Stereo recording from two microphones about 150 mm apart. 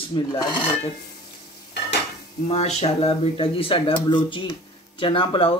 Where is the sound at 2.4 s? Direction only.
45° left (ahead or behind).